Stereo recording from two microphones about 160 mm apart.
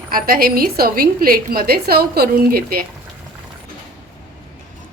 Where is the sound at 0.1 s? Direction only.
65° right (ahead or behind).